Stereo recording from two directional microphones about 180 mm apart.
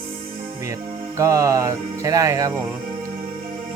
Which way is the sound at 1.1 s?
15° right (ahead or behind).